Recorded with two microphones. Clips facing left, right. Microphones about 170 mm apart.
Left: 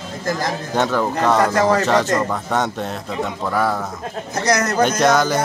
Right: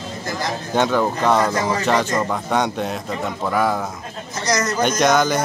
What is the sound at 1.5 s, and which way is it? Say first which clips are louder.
Speech: left 5 dB; 65° left (ahead or behind).